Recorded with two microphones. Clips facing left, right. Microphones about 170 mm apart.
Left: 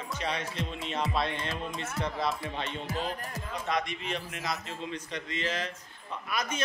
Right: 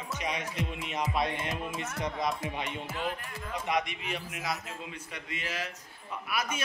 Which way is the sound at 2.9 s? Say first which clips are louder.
Left 2 dB; 40° left (ahead or behind).